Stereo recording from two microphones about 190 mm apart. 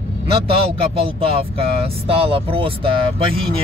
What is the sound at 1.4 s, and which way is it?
Speech, 30° right (ahead or behind).